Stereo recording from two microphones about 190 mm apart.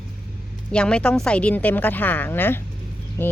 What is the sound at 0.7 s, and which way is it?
A woman's voice, 5° left (ahead or behind).